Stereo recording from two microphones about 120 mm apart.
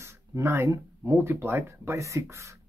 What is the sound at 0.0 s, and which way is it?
Speech, 25° right (ahead or behind).